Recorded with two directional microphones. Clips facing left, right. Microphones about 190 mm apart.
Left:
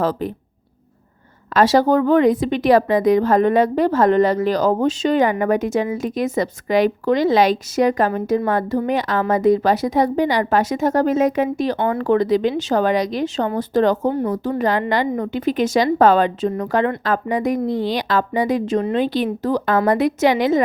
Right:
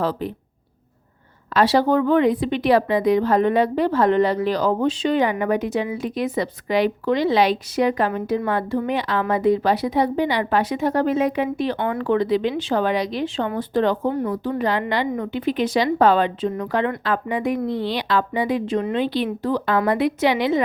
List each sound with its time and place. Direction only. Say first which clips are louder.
0.0 s speech: left 3 dB; 45° left (ahead or behind)
1.5 s speech: left 3 dB; 45° left (ahead or behind)